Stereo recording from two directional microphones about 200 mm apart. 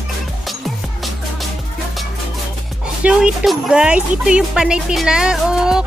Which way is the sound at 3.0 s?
5° right (ahead or behind).